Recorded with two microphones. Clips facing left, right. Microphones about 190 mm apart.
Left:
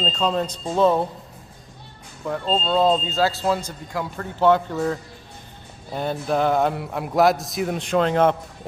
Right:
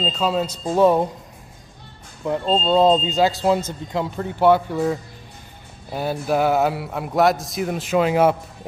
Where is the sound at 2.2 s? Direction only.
20° right (ahead or behind).